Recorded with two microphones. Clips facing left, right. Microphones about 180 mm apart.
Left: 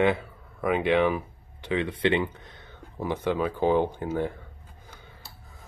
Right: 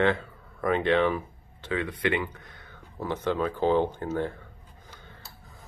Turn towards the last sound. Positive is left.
turn(degrees=10)  # may be behind; listen again after turning